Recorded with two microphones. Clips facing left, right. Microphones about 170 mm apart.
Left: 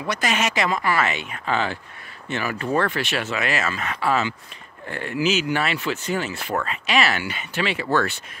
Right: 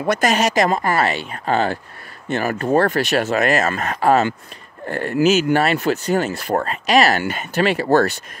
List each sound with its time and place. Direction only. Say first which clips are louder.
0.0 s speech: right 6 dB; 45° right (ahead or behind)